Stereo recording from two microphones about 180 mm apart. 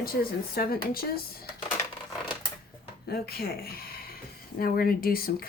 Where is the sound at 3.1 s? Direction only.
60° left (ahead or behind).